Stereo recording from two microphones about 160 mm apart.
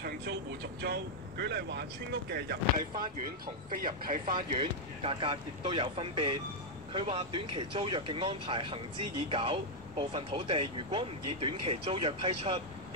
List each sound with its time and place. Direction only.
0.0 s speech: 90° right
3.7 s speech: 60° right (ahead or behind)
4.6 s speech: 35° right (ahead or behind)